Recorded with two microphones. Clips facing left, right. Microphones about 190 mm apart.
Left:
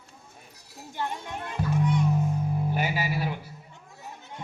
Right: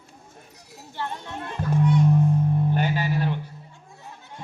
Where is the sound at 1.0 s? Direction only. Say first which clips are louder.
Right 1 dB; 15° left (ahead or behind).